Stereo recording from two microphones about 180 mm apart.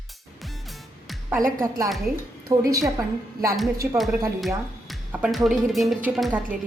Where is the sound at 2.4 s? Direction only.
20° right (ahead or behind).